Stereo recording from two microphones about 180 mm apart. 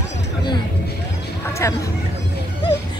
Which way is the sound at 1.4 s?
15° left (ahead or behind).